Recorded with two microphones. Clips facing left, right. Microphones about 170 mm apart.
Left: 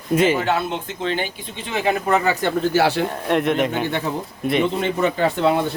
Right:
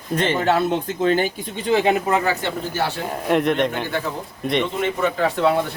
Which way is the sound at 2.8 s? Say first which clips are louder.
Left 7 dB; 90° left.